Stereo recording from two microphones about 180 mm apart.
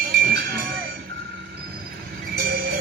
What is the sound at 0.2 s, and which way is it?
Music, 55° right (ahead or behind).